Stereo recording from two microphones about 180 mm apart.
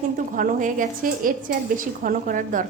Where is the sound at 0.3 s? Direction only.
50° right (ahead or behind).